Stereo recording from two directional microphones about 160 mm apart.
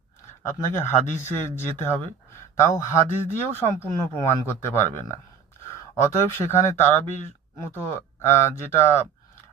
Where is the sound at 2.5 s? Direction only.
20° left (ahead or behind).